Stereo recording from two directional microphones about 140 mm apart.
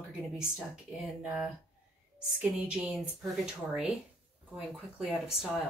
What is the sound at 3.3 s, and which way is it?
Speech, 5° right (ahead or behind).